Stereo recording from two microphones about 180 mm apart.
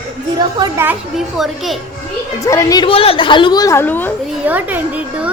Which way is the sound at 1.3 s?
Centre (ahead or behind).